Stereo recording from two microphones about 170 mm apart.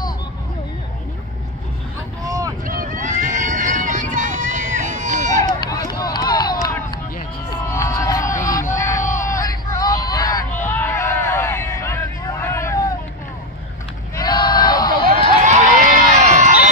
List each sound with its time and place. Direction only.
2.2 s vehicle: 20° right (ahead or behind)
2.6 s vehicle: 50° right (ahead or behind)
5.9 s run: 25° left (ahead or behind)
7.6 s music: 15° left (ahead or behind)
8.7 s a sound: 20° left (ahead or behind)
9.0 s a sound: 50° left (ahead or behind)
9.3 s hubbub: 20° left (ahead or behind)
14.1 s crowd: 25° left (ahead or behind)
15.1 s run: 45° right (ahead or behind)